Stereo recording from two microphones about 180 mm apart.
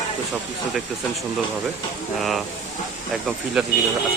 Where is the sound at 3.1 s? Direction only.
Centre (ahead or behind).